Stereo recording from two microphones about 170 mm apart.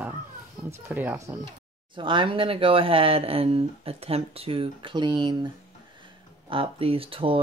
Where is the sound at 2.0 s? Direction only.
30° right (ahead or behind).